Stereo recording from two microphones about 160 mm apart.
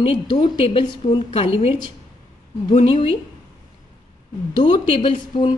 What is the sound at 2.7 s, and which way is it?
Speech, 35° left (ahead or behind).